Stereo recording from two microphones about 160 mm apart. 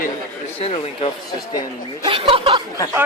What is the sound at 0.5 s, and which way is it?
Speech, 35° left (ahead or behind).